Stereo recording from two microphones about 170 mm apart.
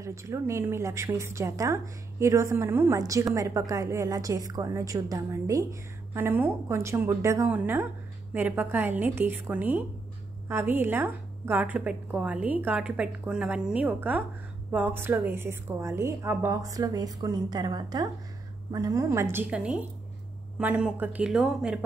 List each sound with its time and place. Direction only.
0.0 s a woman's voice: 15° right (ahead or behind)